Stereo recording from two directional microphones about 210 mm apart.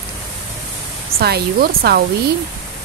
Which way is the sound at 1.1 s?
50° right (ahead or behind).